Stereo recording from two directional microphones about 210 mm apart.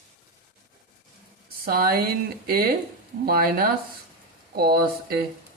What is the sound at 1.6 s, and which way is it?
Speech, 45° right (ahead or behind).